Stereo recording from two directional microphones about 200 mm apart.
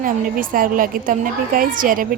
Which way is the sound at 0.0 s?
45° right (ahead or behind).